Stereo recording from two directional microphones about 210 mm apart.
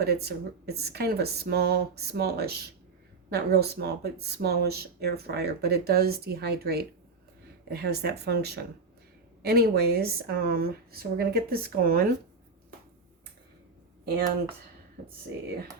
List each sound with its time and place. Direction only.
0.0 s speech: 50° right (ahead or behind)
14.0 s speech: 45° right (ahead or behind)